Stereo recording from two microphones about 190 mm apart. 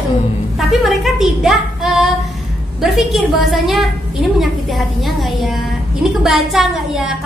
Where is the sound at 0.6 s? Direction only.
Centre (ahead or behind).